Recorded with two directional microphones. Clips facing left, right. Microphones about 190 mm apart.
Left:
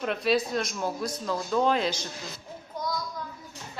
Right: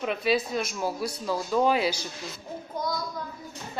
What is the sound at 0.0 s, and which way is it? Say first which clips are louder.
A man's voice: even; 5° right (ahead or behind).